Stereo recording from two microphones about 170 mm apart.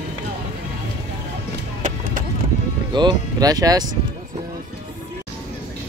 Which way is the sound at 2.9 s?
25° right (ahead or behind).